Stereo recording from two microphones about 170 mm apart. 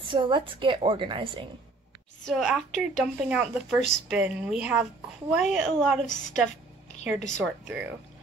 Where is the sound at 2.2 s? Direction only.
Centre (ahead or behind).